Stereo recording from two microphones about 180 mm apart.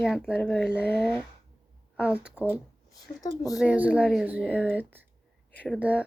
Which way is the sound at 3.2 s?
20° left (ahead or behind).